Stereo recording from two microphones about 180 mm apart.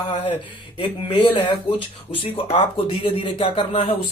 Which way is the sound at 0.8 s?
30° left (ahead or behind).